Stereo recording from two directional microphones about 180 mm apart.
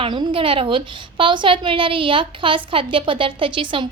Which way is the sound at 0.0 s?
25° right (ahead or behind).